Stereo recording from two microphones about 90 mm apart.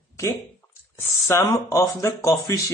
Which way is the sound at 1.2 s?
30° left (ahead or behind).